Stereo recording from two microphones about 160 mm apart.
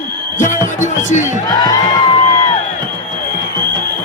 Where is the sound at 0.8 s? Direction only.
50° left (ahead or behind).